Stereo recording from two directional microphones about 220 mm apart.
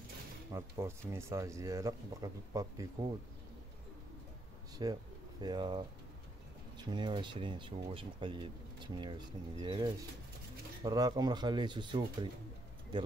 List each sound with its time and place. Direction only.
0.5 s speech: 10° right (ahead or behind)
4.8 s speech: 20° right (ahead or behind)
6.8 s speech: 20° right (ahead or behind)